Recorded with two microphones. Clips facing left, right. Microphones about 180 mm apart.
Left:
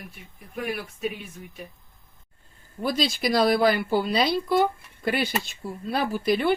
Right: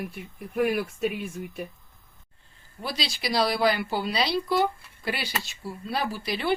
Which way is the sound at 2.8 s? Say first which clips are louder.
Left 7 dB; 50° left (ahead or behind).